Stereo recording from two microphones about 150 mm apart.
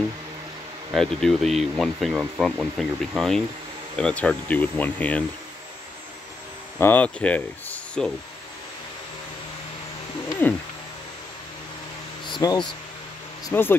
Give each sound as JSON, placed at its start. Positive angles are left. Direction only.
{"t": 0.9, "sound": "speech", "side_deg": 0}
{"t": 6.8, "sound": "speech", "side_deg": 10}
{"t": 10.4, "sound": "a sound", "side_deg": 10}
{"t": 12.4, "sound": "speech", "side_deg": 30}
{"t": 13.5, "sound": "speech", "side_deg": 15}